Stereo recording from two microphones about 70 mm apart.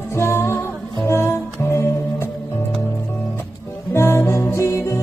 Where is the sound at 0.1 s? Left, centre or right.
Left.